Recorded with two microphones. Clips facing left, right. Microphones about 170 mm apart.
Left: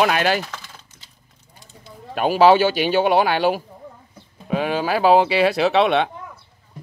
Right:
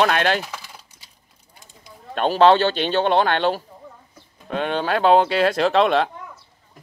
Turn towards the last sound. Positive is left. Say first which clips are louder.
# even
turn(degrees=0)  # may be behind; listen again after turning